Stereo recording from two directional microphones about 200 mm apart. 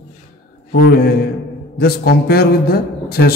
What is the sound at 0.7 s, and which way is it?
A man's voice, 55° left (ahead or behind).